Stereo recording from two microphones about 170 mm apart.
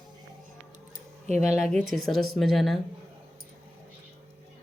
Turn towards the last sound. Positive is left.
turn(degrees=0)  # may be behind; listen again after turning